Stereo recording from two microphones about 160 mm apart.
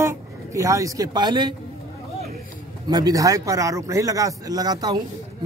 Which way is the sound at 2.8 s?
25° right (ahead or behind).